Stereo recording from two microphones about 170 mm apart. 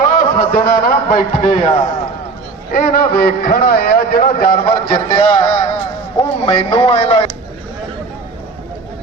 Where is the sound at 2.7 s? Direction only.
60° left (ahead or behind).